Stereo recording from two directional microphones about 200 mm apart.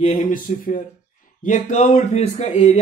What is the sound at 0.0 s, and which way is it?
Speech, 40° left (ahead or behind).